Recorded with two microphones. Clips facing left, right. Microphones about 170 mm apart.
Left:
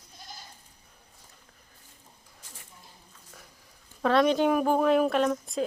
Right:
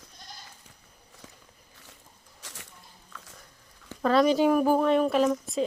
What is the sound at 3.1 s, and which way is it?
Dog, 90° right.